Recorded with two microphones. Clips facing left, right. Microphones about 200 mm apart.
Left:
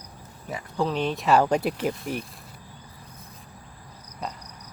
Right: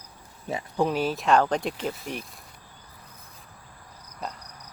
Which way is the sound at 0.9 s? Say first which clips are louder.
Left 2 dB; 5° right (ahead or behind).